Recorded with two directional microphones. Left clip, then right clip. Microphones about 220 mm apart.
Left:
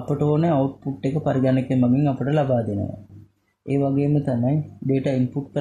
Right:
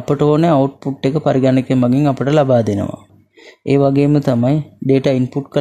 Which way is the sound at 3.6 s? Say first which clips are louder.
Right 9 dB; 45° right (ahead or behind).